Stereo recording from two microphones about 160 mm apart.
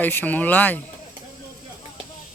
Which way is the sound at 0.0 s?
10° left (ahead or behind).